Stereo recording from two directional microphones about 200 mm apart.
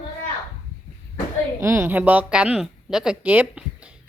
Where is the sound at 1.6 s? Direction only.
15° right (ahead or behind).